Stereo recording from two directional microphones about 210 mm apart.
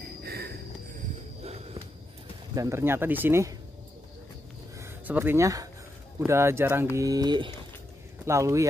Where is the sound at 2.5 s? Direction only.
15° right (ahead or behind).